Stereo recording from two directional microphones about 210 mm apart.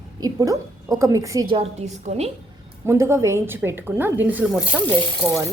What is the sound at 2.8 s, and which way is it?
A woman's voice, 15° right (ahead or behind).